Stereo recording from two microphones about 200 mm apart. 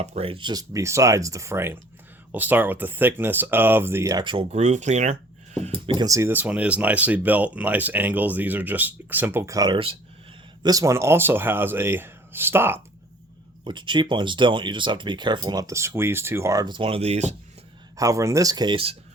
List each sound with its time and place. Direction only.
0.0 s speech: 30° right (ahead or behind); by 12.8 s 10° right (ahead or behind)
13.7 s speech: 25° right (ahead or behind)
17.9 s speech: 15° right (ahead or behind)